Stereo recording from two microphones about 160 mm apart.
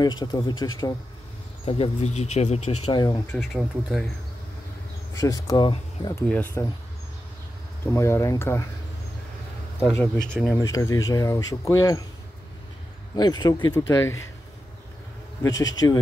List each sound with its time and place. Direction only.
0.0 s speech: 25° left (ahead or behind)
1.7 s speech: 40° left (ahead or behind)
2.9 s speech: 25° left (ahead or behind)
3.5 s speech: centre (ahead or behind)
5.1 s speech: 20° left (ahead or behind)
6.1 s speech: 10° left (ahead or behind)
7.8 s speech: 15° left (ahead or behind)
10.6 s speech: 20° left (ahead or behind)
13.1 s speech: 25° left (ahead or behind)
15.4 s speech: 25° left (ahead or behind)